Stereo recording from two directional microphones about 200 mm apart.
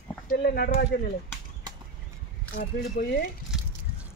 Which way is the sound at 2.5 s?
55° left (ahead or behind).